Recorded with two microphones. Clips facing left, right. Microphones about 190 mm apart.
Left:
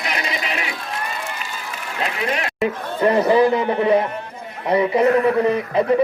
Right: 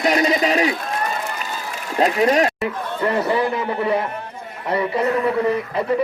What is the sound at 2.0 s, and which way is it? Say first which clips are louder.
Speech: right 8 dB; 40° right (ahead or behind).